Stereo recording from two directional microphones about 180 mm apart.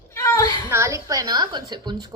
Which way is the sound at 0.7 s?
15° right (ahead or behind).